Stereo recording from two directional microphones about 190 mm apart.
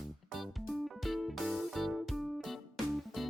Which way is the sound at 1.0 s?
Centre (ahead or behind).